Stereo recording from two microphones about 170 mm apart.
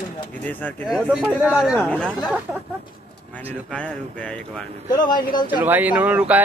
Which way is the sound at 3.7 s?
5° left (ahead or behind).